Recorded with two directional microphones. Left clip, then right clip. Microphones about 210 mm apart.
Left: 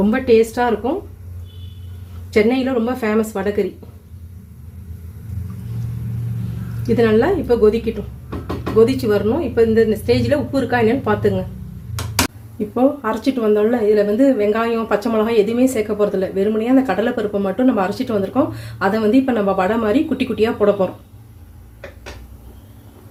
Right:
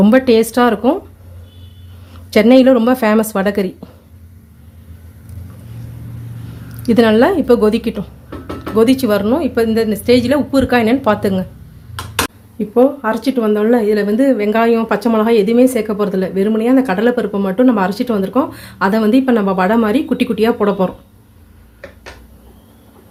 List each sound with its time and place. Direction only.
0.0 s a woman's voice: 50° right (ahead or behind)
2.3 s a woman's voice: 50° right (ahead or behind)
6.8 s a woman's voice: 50° right (ahead or behind)
8.8 s a woman's voice: 45° right (ahead or behind)
12.7 s a woman's voice: 25° right (ahead or behind)